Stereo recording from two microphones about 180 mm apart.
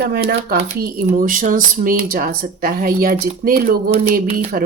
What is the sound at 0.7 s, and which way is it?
Speech, 50° right (ahead or behind).